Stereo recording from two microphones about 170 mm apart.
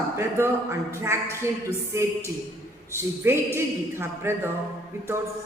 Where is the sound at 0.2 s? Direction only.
15° right (ahead or behind).